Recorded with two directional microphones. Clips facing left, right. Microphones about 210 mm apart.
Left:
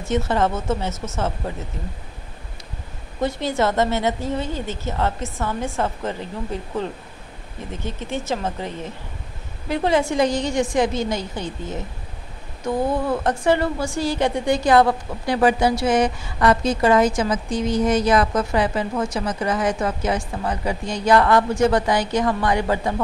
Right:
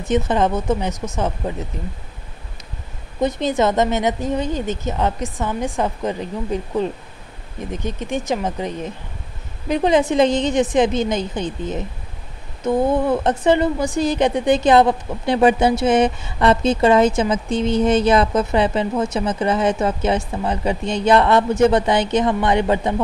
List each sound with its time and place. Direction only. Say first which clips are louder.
0.0 s a woman's voice: right 3 dB; 15° right (ahead or behind)
3.2 s a woman's voice: right 3 dB; 20° right (ahead or behind)